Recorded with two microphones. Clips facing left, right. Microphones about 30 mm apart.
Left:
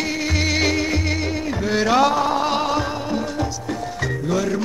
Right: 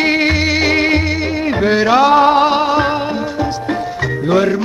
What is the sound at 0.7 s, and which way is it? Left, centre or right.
Music, right.